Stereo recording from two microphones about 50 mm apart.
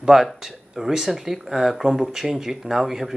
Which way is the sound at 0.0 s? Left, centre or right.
Centre.